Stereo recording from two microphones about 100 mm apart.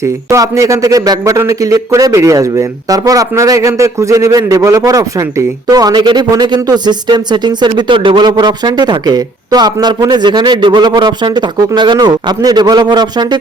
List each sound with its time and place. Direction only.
0.0 s speech: 30° right (ahead or behind); by 13.4 s 45° right (ahead or behind)